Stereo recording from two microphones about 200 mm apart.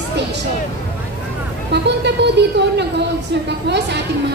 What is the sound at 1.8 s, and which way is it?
A woman's voice, 60° right (ahead or behind).